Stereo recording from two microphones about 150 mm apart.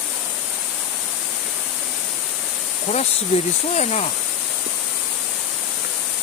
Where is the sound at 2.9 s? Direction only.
50° left (ahead or behind).